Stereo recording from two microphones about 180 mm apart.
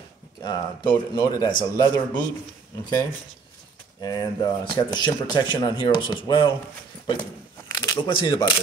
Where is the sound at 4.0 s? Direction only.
20° left (ahead or behind).